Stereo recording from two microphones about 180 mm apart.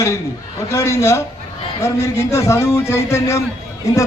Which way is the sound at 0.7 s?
15° left (ahead or behind).